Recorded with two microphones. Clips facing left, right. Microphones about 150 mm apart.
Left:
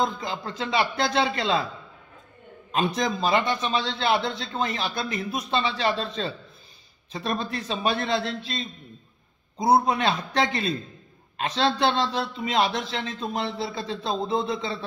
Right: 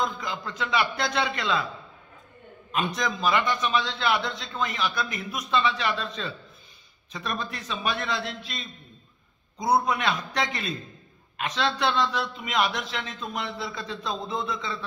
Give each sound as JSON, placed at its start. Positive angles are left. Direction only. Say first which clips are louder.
{"t": 0.0, "sound": "a man's voice", "louder": "left 3 dB", "side_deg": 30}
{"t": 2.7, "sound": "a man's voice", "louder": "left 3 dB", "side_deg": 30}